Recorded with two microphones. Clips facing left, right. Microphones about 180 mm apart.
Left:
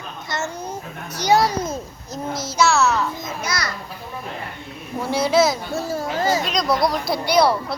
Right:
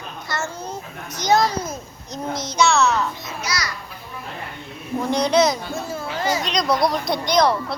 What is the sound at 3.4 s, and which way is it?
Speech, 55° left (ahead or behind).